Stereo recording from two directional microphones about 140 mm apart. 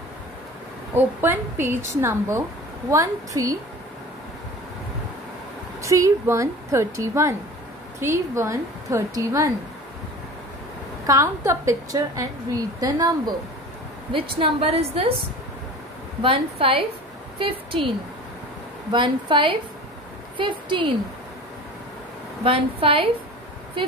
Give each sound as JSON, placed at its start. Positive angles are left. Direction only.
{"t": 0.9, "sound": "a woman's voice", "side_deg": -15}
{"t": 5.8, "sound": "speech", "side_deg": -20}
{"t": 11.1, "sound": "speech", "side_deg": -20}
{"t": 14.4, "sound": "a woman's voice", "side_deg": -45}
{"t": 16.2, "sound": "a woman's voice", "side_deg": -40}
{"t": 22.4, "sound": "a woman's voice", "side_deg": -40}